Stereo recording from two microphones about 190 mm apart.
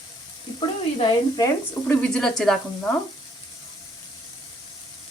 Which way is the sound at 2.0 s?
5° left (ahead or behind).